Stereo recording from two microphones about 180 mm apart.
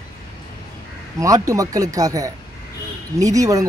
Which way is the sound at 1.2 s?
20° right (ahead or behind).